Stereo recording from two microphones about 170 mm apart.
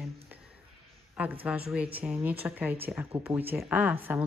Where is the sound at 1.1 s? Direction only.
10° right (ahead or behind).